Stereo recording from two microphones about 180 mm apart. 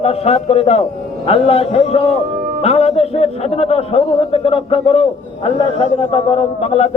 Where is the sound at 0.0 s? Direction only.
35° left (ahead or behind).